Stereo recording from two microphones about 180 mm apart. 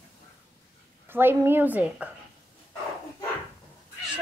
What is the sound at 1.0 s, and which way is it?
A woman's voice, 10° right (ahead or behind).